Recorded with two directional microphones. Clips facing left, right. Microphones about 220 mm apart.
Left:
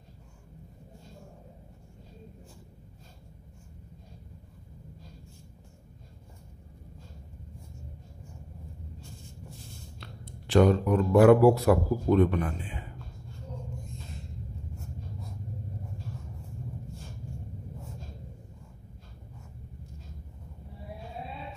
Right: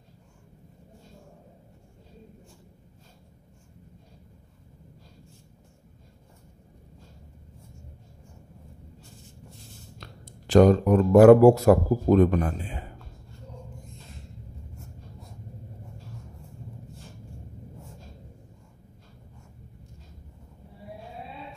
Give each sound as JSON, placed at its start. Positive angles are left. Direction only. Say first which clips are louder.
{"t": 9.9, "sound": "speech", "louder": "left 1 dB", "side_deg": -40}